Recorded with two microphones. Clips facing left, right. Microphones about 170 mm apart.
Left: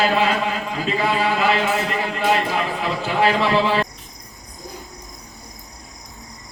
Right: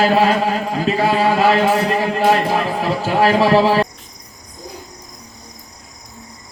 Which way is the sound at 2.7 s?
40° right (ahead or behind).